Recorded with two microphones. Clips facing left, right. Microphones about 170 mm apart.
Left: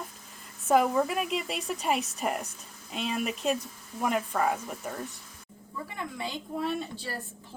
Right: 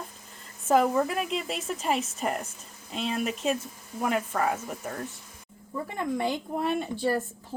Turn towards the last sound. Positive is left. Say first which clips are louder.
# right 7 dB
turn(degrees=-60)  # may be behind; listen again after turning